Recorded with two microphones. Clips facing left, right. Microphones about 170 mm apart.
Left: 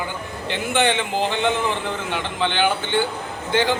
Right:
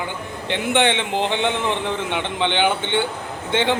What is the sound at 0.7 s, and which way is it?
Speech, 20° right (ahead or behind).